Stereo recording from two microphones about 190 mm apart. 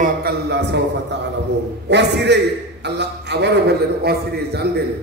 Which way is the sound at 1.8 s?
65° right (ahead or behind).